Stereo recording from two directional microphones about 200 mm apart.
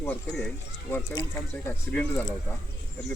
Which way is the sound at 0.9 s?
20° left (ahead or behind).